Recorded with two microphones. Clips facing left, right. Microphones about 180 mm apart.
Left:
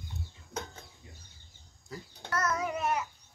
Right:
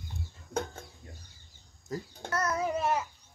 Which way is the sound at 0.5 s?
50° right (ahead or behind).